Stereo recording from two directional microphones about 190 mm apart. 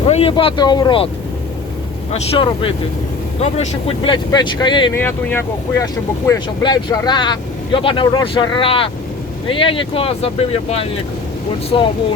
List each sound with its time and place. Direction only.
0.1 s speech: 30° left (ahead or behind)
2.1 s speech: 30° left (ahead or behind)
4.9 s speech: 10° left (ahead or behind); by 11.9 s 25° left (ahead or behind)